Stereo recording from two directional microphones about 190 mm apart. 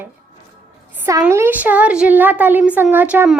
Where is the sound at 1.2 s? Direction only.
10° right (ahead or behind).